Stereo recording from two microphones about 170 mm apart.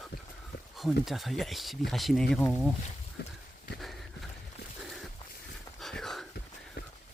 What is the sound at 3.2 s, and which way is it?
Horse, 70° left (ahead or behind).